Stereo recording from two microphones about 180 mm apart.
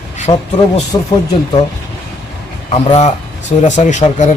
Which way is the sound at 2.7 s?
40° left (ahead or behind).